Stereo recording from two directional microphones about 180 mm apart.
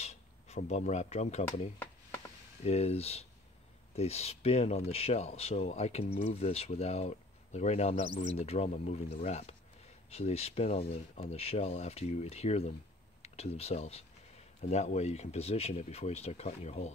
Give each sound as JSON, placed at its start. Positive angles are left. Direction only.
{"t": 0.0, "sound": "a sound", "side_deg": 40}
{"t": 0.6, "sound": "speech", "side_deg": 40}
{"t": 1.8, "sound": "chopping", "side_deg": 15}
{"t": 2.6, "sound": "speech", "side_deg": 35}